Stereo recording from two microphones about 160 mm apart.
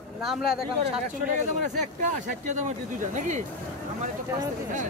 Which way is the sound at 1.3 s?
50° right (ahead or behind).